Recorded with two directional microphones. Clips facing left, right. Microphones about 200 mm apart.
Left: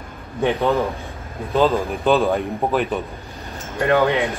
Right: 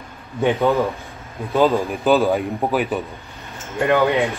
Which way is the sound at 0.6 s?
Centre (ahead or behind).